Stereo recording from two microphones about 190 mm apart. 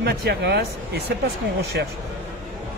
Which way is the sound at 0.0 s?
60° right (ahead or behind).